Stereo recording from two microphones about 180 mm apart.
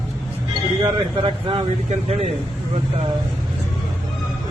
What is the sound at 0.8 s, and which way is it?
Speech, 30° right (ahead or behind).